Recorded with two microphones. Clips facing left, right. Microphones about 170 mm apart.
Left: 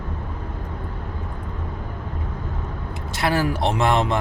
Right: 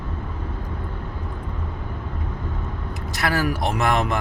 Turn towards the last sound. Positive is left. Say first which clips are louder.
# left 2 dB
turn(degrees=25)  # may be behind; listen again after turning